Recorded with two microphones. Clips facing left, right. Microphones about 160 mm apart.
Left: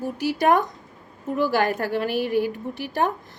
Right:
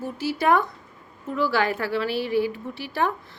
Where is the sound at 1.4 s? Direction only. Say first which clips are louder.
Left 1 dB; 45° left (ahead or behind).